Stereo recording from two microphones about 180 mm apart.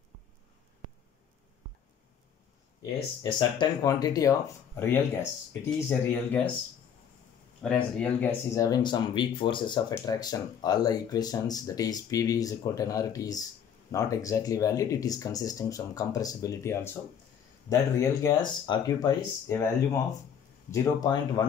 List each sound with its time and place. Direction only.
2.8 s speech: 25° left (ahead or behind)
7.6 s speech: 5° left (ahead or behind)
8.6 s speech: 25° left (ahead or behind)
20.7 s speech: 20° left (ahead or behind)